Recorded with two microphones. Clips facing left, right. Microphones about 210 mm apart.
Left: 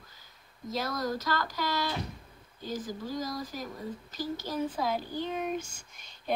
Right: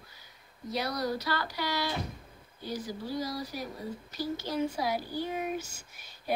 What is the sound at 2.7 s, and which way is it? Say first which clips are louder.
Speech: even; 45° left (ahead or behind).